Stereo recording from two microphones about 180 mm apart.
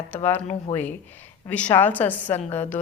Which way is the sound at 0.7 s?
40° left (ahead or behind).